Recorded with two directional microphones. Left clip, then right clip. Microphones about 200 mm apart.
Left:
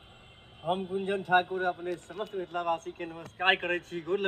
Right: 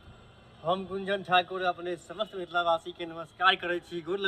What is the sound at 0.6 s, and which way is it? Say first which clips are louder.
Speech: right 1 dB; 15° right (ahead or behind).